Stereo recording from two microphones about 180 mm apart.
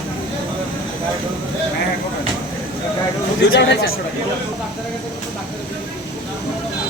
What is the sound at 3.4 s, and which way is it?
Speech, 70° left (ahead or behind).